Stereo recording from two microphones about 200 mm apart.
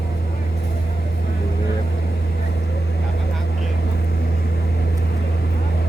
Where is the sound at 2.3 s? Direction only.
55° left (ahead or behind).